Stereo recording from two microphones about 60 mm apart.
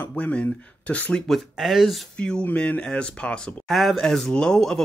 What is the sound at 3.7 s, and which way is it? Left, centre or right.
Speech, centre.